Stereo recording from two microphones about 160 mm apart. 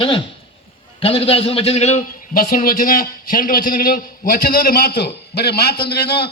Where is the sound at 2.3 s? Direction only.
60° left (ahead or behind).